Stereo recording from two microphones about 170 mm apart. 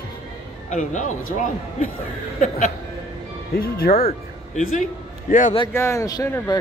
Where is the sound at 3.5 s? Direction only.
60° left (ahead or behind).